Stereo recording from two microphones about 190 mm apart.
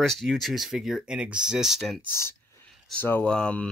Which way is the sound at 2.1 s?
10° left (ahead or behind).